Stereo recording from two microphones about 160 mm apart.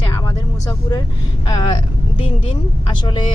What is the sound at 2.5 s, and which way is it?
Speech, 30° left (ahead or behind).